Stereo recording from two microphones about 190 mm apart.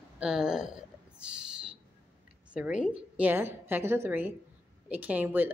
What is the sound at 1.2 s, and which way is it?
Owl, 5° right (ahead or behind).